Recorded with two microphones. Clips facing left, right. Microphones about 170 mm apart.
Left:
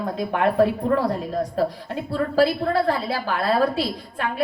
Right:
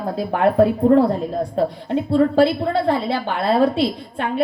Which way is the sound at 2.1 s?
25° right (ahead or behind).